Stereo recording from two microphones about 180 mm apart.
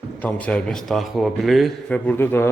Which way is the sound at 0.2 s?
5° left (ahead or behind).